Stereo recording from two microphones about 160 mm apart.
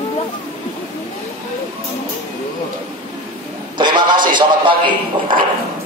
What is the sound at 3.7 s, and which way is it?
Speech, 30° right (ahead or behind).